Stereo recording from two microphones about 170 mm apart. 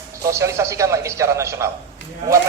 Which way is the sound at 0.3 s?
15° right (ahead or behind).